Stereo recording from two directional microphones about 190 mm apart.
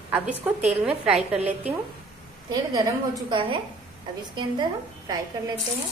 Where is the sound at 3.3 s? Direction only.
25° right (ahead or behind).